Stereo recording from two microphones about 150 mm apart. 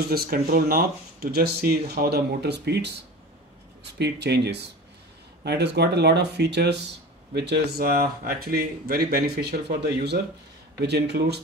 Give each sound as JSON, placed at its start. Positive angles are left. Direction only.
{"t": 0.1, "sound": "speech", "side_deg": -75}
{"t": 4.0, "sound": "speech", "side_deg": -90}
{"t": 5.4, "sound": "speech", "side_deg": -90}